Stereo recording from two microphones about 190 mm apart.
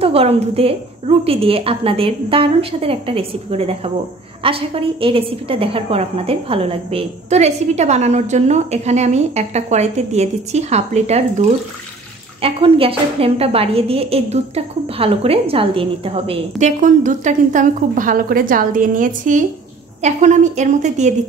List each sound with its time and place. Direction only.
0.0 s a woman's voice: 30° right (ahead or behind)